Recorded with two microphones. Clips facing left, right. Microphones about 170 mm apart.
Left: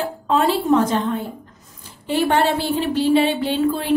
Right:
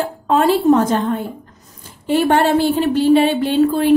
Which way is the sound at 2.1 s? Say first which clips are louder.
Right 4 dB; 50° right (ahead or behind).